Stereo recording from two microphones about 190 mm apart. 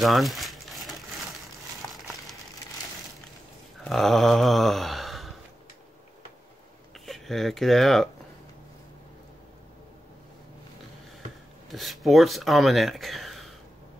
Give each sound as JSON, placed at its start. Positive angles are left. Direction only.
{"t": 0.0, "sound": "crumpling", "side_deg": 0}
{"t": 3.8, "sound": "a sound", "side_deg": 0}
{"t": 7.1, "sound": "speech", "side_deg": 0}
{"t": 11.7, "sound": "speech", "side_deg": 0}